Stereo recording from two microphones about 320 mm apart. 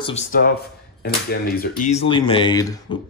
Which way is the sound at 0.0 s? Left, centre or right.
Left.